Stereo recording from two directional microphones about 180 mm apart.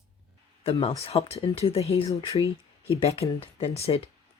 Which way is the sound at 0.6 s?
30° left (ahead or behind).